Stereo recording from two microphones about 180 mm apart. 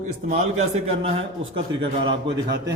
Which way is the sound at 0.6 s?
35° right (ahead or behind).